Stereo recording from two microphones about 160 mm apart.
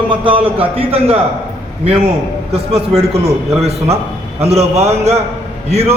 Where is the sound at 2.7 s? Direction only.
40° right (ahead or behind).